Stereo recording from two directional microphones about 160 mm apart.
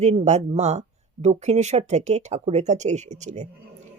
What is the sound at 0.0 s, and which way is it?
Speech, 45° right (ahead or behind).